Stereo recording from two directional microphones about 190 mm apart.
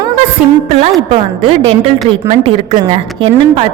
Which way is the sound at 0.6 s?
35° right (ahead or behind).